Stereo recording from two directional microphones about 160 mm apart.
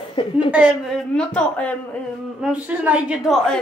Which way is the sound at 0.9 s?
5° left (ahead or behind).